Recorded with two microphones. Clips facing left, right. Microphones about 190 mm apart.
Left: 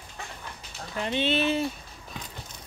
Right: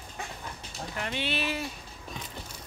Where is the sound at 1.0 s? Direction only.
20° left (ahead or behind).